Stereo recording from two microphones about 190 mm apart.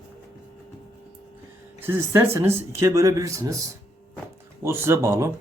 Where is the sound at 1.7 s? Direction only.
10° right (ahead or behind).